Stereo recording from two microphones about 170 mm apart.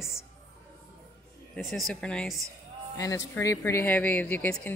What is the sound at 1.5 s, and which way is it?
Speech, centre (ahead or behind).